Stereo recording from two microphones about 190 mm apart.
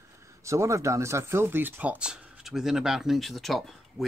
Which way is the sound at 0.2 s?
15° right (ahead or behind).